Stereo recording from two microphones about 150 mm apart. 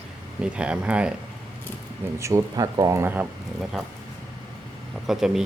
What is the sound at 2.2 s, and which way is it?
Speech, 20° right (ahead or behind).